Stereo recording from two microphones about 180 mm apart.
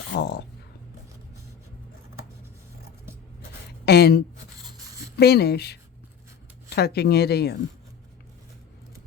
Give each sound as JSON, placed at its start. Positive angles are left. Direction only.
{"t": 0.1, "sound": "speech", "side_deg": 65}
{"t": 3.8, "sound": "speech", "side_deg": 65}